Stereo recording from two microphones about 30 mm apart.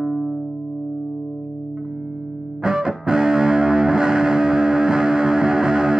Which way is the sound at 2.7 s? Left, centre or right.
Right.